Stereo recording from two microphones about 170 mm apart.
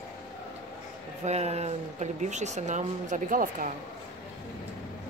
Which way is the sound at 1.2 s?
40° right (ahead or behind).